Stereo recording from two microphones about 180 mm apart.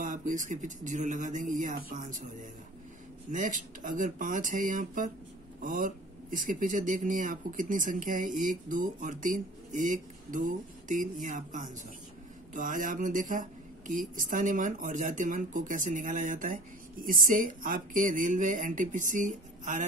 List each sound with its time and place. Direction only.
0.0 s speech: 45° right (ahead or behind)
3.3 s speech: 45° right (ahead or behind)